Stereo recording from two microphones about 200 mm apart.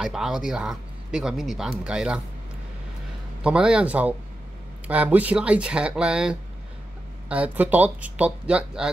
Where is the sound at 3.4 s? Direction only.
5° right (ahead or behind).